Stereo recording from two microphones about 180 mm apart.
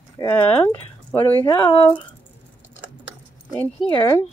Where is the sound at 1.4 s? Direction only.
25° left (ahead or behind).